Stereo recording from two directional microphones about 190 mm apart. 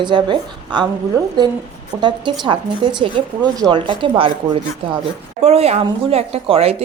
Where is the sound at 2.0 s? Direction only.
25° right (ahead or behind).